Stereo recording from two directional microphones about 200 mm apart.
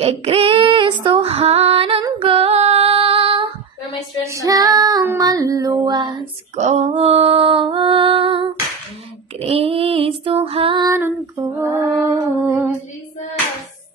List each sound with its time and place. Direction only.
0.0 s female singing: 30° right (ahead or behind)
6.5 s mantra: 35° right (ahead or behind)
9.4 s female singing: 30° right (ahead or behind)
11.0 s female singing: 10° right (ahead or behind)